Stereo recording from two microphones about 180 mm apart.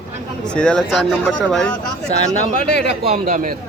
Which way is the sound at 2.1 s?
40° left (ahead or behind).